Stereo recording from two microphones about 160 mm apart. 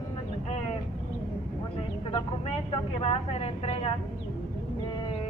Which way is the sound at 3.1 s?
40° left (ahead or behind).